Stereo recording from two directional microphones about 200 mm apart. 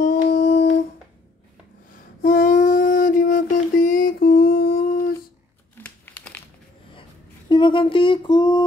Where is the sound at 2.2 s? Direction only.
40° left (ahead or behind).